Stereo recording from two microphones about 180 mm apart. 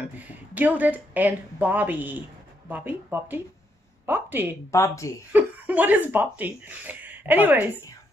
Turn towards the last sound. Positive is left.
turn(degrees=-10)  # may be behind; listen again after turning